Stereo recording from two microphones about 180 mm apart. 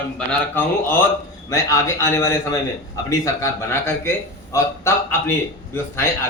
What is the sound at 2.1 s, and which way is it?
A man's voice, 15° left (ahead or behind).